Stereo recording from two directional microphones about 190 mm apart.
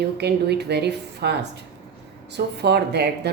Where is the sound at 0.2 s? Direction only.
60° right (ahead or behind).